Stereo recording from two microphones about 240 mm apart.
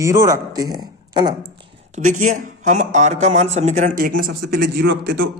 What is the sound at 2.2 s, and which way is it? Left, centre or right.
A man's voice, right.